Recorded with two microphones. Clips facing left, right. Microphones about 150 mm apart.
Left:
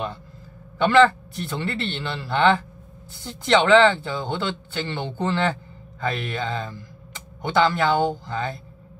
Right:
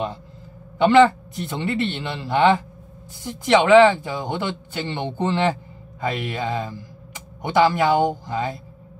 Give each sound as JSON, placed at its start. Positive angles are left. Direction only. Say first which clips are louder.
{"t": 0.7, "sound": "a man's voice", "louder": "right 2 dB", "side_deg": -20}